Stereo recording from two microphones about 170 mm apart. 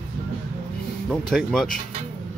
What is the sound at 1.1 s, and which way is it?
Speech, centre (ahead or behind).